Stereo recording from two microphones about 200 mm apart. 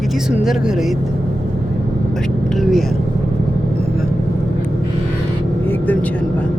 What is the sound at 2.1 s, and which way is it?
Speech, centre (ahead or behind).